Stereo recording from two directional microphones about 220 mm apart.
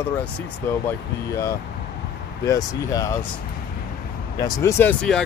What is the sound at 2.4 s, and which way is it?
Speech, 15° left (ahead or behind).